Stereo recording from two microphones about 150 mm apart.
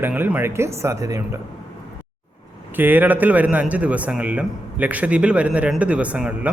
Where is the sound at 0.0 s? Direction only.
10° right (ahead or behind).